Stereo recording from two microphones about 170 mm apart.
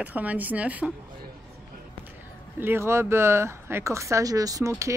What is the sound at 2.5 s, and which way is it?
Speech, 15° right (ahead or behind).